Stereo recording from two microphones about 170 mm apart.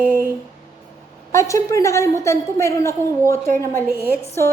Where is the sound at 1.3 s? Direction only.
20° left (ahead or behind).